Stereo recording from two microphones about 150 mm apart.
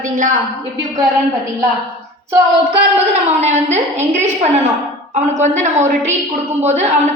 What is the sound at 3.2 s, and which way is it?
A woman's voice, 50° right (ahead or behind).